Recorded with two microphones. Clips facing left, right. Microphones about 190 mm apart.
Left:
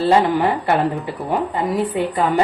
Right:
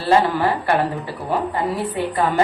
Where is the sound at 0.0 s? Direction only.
20° left (ahead or behind).